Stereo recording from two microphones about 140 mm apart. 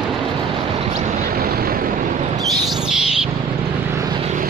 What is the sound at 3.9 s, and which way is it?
Vehicle, 30° right (ahead or behind).